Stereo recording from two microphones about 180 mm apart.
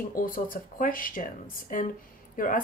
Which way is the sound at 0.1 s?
50° left (ahead or behind).